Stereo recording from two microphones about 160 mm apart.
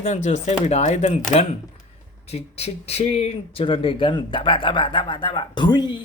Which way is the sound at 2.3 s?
40° left (ahead or behind).